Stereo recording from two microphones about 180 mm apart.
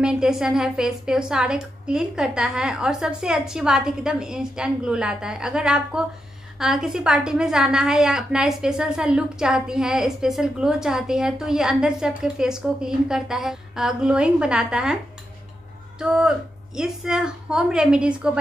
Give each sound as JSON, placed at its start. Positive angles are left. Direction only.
{"t": 0.0, "sound": "a woman's voice", "side_deg": -5}
{"t": 16.0, "sound": "a woman's voice", "side_deg": -5}